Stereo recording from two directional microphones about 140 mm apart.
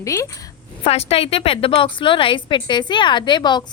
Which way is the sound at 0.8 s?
45° left (ahead or behind).